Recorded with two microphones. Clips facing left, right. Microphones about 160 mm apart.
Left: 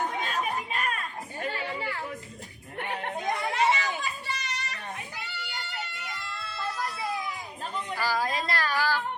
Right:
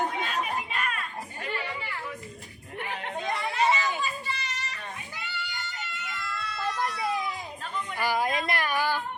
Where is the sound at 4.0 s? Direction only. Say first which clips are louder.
Right 2 dB; 65° left (ahead or behind).